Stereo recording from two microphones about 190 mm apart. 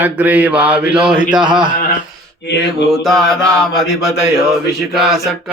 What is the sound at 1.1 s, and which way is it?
Speech, 25° right (ahead or behind).